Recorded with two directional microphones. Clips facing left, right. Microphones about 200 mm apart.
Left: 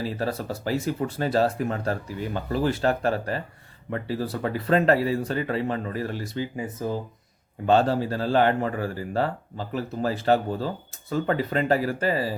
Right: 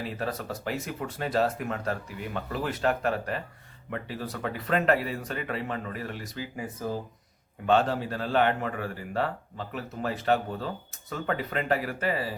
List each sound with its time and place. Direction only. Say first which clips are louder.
0.0 s speech: left 4 dB; 35° left (ahead or behind)
7.7 s speech: left 4 dB; 35° left (ahead or behind)